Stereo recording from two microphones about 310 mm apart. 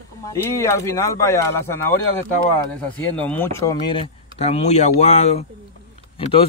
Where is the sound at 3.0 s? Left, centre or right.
Centre.